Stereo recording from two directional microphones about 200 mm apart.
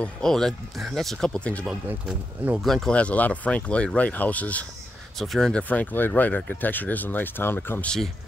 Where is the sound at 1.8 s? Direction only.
5° right (ahead or behind).